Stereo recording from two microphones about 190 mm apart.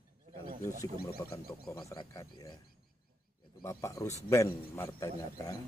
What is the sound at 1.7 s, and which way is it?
Speech, 20° left (ahead or behind).